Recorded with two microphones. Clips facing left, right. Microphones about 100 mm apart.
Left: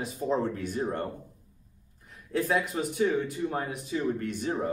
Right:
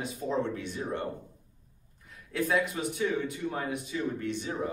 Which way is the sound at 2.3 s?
45° left (ahead or behind).